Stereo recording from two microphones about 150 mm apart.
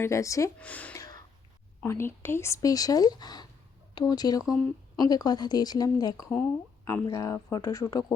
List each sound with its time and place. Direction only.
0.0 s speech: 20° left (ahead or behind)
0.6 s speech: 10° left (ahead or behind)
0.9 s gasp: 25° left (ahead or behind)
1.8 s speech: 15° left (ahead or behind)